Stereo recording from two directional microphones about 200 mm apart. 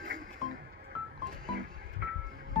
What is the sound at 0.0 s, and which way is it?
Music, 55° right (ahead or behind).